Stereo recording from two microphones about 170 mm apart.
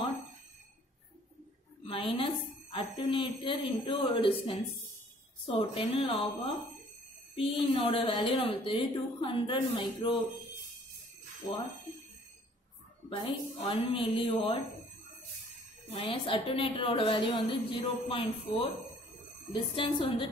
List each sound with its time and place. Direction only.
1.9 s a woman's voice: 30° left (ahead or behind)
13.1 s a woman's voice: 30° left (ahead or behind)
15.9 s a woman's voice: 30° left (ahead or behind)